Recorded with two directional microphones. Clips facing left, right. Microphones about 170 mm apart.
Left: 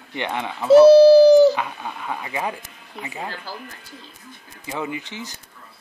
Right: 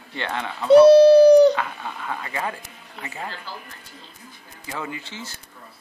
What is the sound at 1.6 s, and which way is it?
Speech, 15° left (ahead or behind).